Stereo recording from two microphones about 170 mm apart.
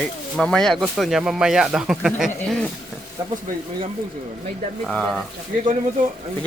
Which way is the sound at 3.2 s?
20° right (ahead or behind).